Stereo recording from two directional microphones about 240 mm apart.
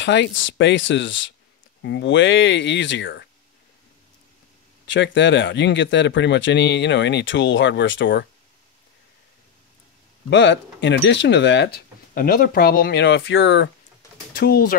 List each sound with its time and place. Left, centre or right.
0.0 s speech: left
4.8 s speech: left
10.3 s speech: left